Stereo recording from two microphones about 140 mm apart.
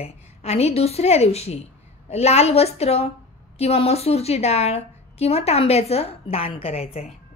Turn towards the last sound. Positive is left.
turn(degrees=50)  # may be behind; listen again after turning